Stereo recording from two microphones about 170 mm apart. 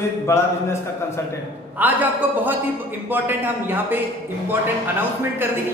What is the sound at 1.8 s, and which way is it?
Speech, 10° right (ahead or behind).